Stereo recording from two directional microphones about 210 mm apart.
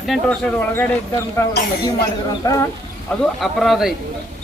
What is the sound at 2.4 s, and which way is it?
Speech, 15° left (ahead or behind).